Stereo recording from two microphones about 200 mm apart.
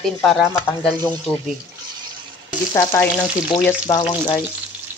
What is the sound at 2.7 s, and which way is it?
Speech, 15° left (ahead or behind).